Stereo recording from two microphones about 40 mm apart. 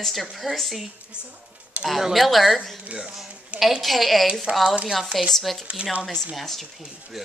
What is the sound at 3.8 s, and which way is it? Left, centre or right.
Speech, centre.